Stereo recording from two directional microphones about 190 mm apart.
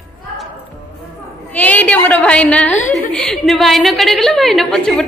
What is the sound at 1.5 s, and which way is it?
A woman's voice, 10° left (ahead or behind).